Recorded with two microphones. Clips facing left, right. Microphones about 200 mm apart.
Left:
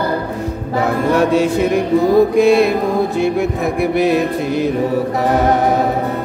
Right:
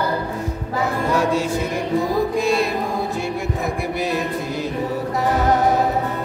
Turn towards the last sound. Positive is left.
turn(degrees=65)  # may be behind; listen again after turning